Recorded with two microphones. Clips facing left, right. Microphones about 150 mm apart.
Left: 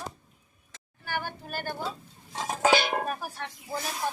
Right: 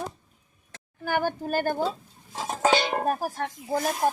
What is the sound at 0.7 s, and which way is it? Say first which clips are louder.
A woman's voice: right 7 dB; 50° right (ahead or behind).